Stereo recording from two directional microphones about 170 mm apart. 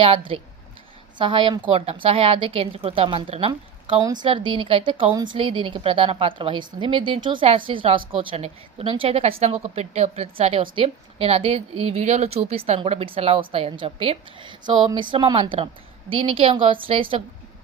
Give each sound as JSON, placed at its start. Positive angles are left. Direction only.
{"t": 0.0, "sound": "a woman's voice", "side_deg": -30}